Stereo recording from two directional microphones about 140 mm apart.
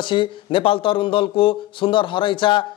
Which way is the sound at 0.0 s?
35° left (ahead or behind).